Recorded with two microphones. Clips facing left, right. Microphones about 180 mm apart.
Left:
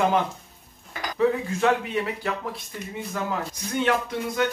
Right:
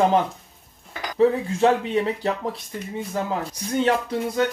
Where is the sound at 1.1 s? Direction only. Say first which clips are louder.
Right 4 dB; 30° right (ahead or behind).